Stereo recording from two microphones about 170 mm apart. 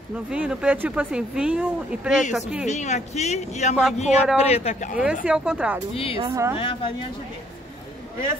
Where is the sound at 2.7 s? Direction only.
40° left (ahead or behind).